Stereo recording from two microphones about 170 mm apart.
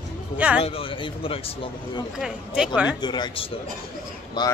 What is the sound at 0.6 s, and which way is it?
A man's voice, 35° left (ahead or behind).